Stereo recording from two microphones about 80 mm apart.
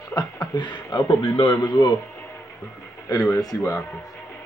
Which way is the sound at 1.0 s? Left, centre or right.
Left.